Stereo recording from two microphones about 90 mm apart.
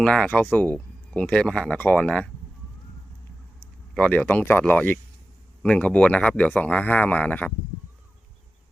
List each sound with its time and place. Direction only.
0.0 s speech: 10° left (ahead or behind)
3.9 s speech: 15° left (ahead or behind)